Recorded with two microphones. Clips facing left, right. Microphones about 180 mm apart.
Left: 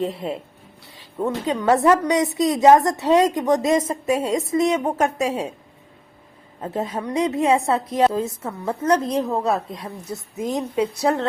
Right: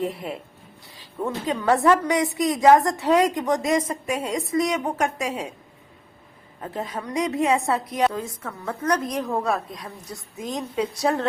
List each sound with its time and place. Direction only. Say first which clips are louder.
0.0 s a woman's voice: left 3 dB; 25° left (ahead or behind)
6.6 s a woman's voice: left 5 dB; 25° left (ahead or behind)